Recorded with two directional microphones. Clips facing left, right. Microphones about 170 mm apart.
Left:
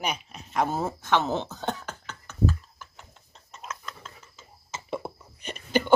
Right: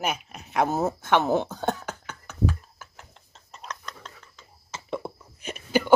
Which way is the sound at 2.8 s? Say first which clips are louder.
Right 1 dB; centre (ahead or behind).